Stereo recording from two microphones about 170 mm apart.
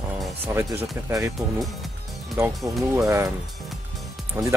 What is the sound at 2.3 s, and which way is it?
Speech, 15° right (ahead or behind).